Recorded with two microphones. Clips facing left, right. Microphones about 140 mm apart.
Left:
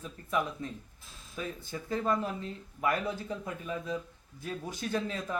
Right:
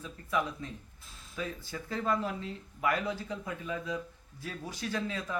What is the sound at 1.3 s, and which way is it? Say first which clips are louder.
Speech: even; 20° left (ahead or behind).